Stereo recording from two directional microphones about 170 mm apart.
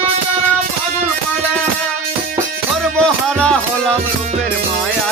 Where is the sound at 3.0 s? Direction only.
5° left (ahead or behind).